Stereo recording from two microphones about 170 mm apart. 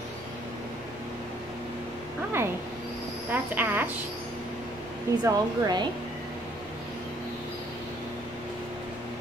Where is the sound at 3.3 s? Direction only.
10° right (ahead or behind).